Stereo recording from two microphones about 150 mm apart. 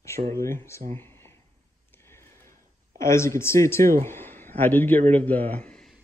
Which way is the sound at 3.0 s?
20° left (ahead or behind).